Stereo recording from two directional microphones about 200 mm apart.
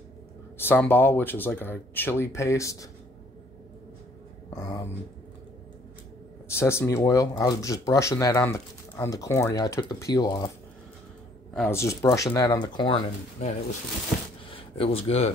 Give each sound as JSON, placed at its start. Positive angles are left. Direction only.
{"t": 0.6, "sound": "speech", "side_deg": 10}
{"t": 4.5, "sound": "speech", "side_deg": 15}
{"t": 6.5, "sound": "speech", "side_deg": 10}
{"t": 11.5, "sound": "speech", "side_deg": 10}
{"t": 14.5, "sound": "speech", "side_deg": 30}